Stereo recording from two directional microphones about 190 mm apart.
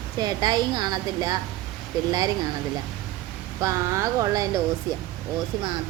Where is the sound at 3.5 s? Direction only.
15° right (ahead or behind).